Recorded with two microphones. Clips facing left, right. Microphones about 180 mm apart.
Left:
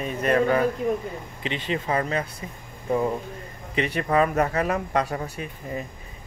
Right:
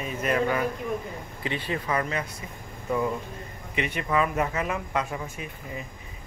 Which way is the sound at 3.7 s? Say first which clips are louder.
Left 4 dB; 35° left (ahead or behind).